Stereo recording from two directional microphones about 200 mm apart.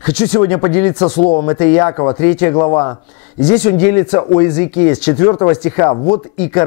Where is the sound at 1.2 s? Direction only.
30° left (ahead or behind).